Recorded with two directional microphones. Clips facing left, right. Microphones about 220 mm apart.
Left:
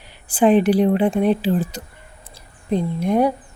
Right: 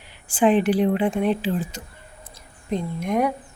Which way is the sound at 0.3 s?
40° left (ahead or behind).